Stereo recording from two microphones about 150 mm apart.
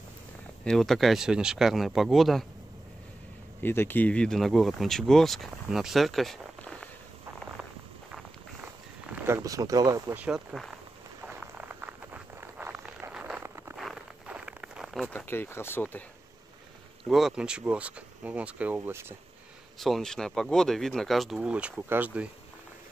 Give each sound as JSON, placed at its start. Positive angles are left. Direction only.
{"t": 0.7, "sound": "speech", "side_deg": 0}
{"t": 3.6, "sound": "speech", "side_deg": 15}
{"t": 9.1, "sound": "speech", "side_deg": -15}
{"t": 10.1, "sound": "speech", "side_deg": -5}
{"t": 11.2, "sound": "a sound", "side_deg": -10}
{"t": 13.7, "sound": "a sound", "side_deg": -5}
{"t": 15.0, "sound": "speech", "side_deg": 10}
{"t": 17.1, "sound": "speech", "side_deg": -5}
{"t": 19.8, "sound": "speech", "side_deg": 0}